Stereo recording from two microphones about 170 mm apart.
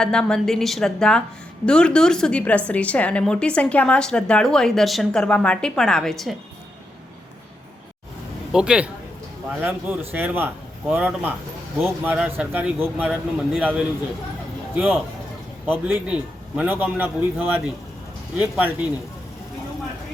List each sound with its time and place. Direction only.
0.0 s a woman's voice: 5° left (ahead or behind)
8.5 s a woman's voice: 5° right (ahead or behind)